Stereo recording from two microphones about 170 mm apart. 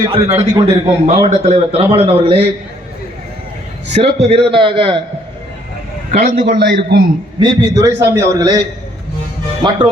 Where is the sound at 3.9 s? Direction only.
40° right (ahead or behind).